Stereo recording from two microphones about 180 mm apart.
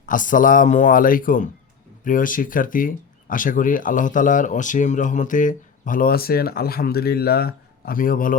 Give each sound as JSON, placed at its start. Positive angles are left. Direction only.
{"t": 0.0, "sound": "speech", "side_deg": 45}